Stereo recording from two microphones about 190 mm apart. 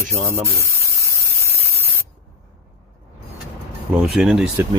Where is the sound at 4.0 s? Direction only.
Centre (ahead or behind).